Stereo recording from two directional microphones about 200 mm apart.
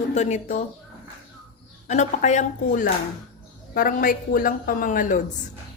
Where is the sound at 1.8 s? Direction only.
35° left (ahead or behind).